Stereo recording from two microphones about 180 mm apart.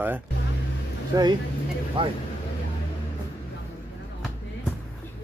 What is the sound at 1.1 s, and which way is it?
Speech, 20° right (ahead or behind).